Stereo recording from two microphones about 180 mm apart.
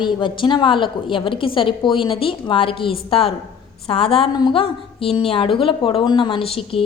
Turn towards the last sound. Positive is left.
turn(degrees=30)  # may be behind; listen again after turning